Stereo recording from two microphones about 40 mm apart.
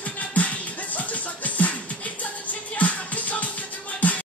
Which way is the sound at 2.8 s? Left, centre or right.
Left.